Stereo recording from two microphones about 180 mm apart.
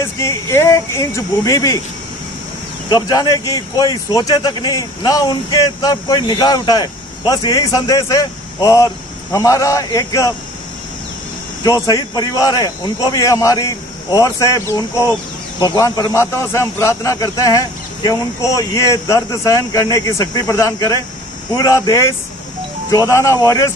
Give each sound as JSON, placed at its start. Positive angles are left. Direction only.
{"t": 0.2, "sound": "a man's voice", "side_deg": 15}
{"t": 2.9, "sound": "speech", "side_deg": 20}
{"t": 11.6, "sound": "a man's voice", "side_deg": 20}